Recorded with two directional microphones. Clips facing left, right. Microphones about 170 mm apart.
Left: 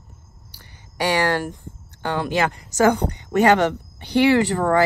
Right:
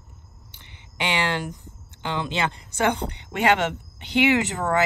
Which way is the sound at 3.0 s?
25° left (ahead or behind).